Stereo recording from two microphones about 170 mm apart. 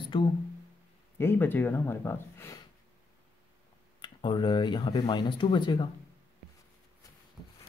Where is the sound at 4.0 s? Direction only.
30° left (ahead or behind).